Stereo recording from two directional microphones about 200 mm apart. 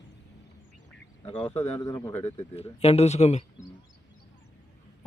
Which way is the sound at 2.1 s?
35° left (ahead or behind).